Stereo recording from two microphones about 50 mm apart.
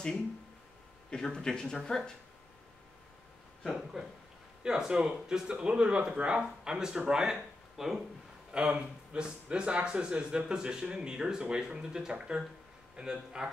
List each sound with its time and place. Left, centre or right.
1.1 s speech: centre
3.6 s speech: centre
7.7 s speech: centre
8.5 s speech: centre